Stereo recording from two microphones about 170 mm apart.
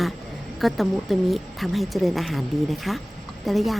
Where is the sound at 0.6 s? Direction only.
Centre (ahead or behind).